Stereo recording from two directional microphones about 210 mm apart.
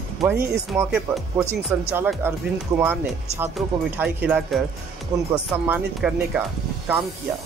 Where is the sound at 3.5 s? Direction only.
10° right (ahead or behind).